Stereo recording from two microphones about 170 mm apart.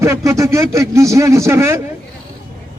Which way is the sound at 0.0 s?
15° right (ahead or behind).